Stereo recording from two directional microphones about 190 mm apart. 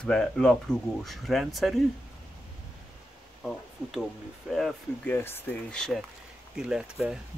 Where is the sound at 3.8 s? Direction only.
5° right (ahead or behind).